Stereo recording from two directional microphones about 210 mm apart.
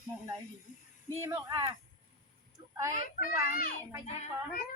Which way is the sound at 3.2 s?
40° left (ahead or behind).